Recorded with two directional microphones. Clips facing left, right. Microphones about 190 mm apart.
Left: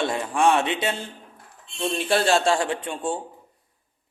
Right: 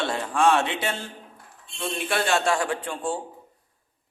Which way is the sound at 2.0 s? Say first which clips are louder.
Left 3 dB; 30° left (ahead or behind).